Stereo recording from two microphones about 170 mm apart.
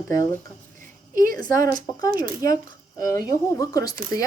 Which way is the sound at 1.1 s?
55° right (ahead or behind).